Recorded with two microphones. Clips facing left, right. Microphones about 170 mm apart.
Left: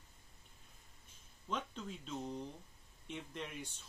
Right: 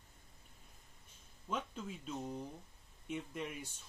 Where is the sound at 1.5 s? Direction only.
10° right (ahead or behind).